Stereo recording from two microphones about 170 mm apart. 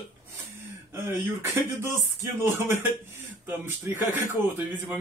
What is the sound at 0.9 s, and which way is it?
Speech, 15° right (ahead or behind).